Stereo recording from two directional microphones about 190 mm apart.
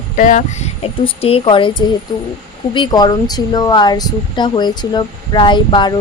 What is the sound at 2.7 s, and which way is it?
Speech, 25° left (ahead or behind).